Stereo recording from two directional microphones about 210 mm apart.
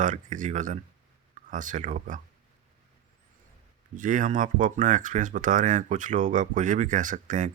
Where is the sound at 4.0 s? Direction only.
40° right (ahead or behind).